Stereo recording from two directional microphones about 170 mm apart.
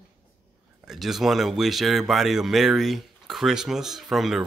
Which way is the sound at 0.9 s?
Centre (ahead or behind).